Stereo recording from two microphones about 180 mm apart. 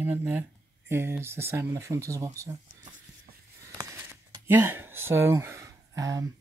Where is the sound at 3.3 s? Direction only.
55° right (ahead or behind).